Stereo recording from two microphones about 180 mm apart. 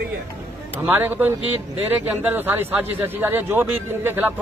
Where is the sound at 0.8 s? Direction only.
10° right (ahead or behind).